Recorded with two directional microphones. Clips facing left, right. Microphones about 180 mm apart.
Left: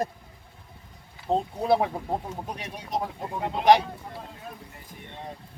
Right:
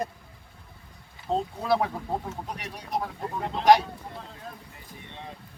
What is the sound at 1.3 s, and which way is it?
Speech, 20° left (ahead or behind).